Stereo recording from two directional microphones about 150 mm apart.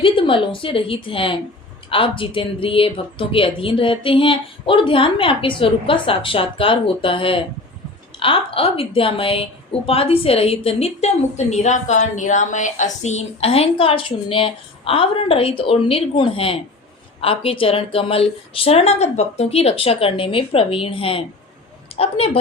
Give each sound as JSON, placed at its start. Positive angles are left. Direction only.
{"t": 0.0, "sound": "a woman's voice", "side_deg": 35}